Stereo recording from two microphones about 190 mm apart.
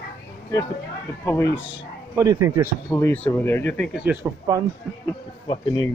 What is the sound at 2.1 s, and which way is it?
Speech, 15° right (ahead or behind).